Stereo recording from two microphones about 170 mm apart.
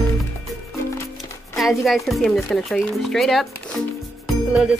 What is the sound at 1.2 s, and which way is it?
Speech, centre (ahead or behind).